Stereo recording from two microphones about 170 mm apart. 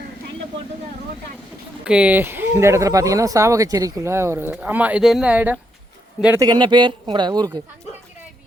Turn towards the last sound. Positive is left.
turn(degrees=-25)  # may be behind; listen again after turning